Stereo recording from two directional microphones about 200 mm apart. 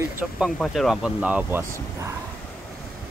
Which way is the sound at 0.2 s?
Centre (ahead or behind).